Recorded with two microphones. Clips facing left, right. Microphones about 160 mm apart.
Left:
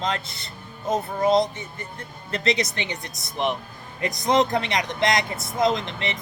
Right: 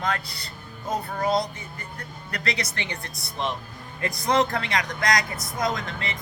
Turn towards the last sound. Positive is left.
turn(degrees=20)  # may be behind; listen again after turning